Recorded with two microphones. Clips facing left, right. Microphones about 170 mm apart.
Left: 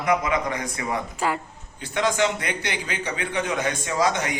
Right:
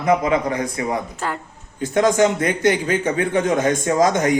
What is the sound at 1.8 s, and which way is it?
A man's voice, 45° right (ahead or behind).